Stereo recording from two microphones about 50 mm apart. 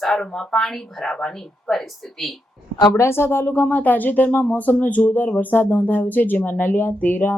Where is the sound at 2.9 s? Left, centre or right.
Left.